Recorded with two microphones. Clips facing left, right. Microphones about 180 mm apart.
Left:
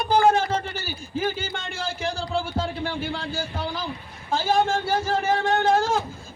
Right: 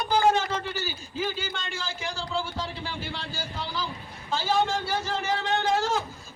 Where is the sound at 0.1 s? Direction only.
55° left (ahead or behind).